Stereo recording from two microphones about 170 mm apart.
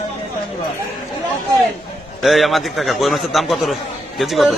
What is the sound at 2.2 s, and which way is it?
A man's voice, centre (ahead or behind).